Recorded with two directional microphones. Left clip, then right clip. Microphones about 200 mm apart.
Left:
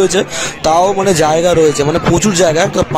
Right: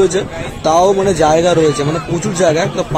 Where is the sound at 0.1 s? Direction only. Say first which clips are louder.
Left 4 dB; 55° left (ahead or behind).